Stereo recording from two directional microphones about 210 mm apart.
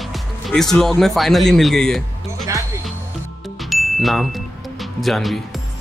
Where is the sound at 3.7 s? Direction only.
Centre (ahead or behind).